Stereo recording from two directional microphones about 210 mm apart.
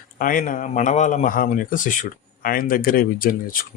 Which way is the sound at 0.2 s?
40° left (ahead or behind).